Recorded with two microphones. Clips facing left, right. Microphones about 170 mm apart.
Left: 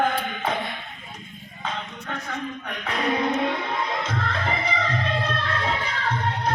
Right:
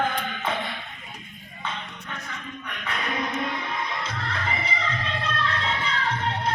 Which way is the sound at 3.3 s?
55° left (ahead or behind).